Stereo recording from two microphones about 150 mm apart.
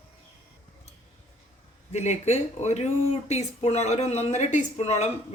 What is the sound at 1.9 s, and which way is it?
Speech, 50° left (ahead or behind).